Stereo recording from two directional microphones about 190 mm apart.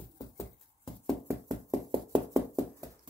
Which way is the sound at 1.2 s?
15° right (ahead or behind).